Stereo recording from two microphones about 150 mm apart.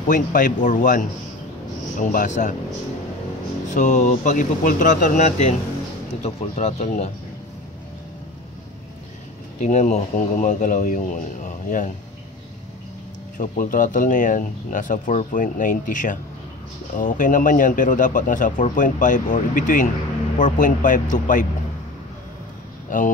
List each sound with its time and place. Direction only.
0.0 s a man's voice: 60° left (ahead or behind)
3.6 s a man's voice: 55° left (ahead or behind)
9.6 s a man's voice: 50° left (ahead or behind)
13.4 s a man's voice: 65° left (ahead or behind)
22.8 s speech: 60° left (ahead or behind)